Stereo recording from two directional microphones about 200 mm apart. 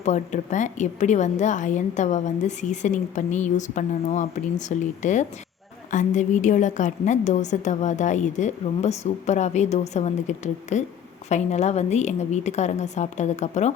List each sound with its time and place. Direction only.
0.0 s a woman's voice: 35° left (ahead or behind)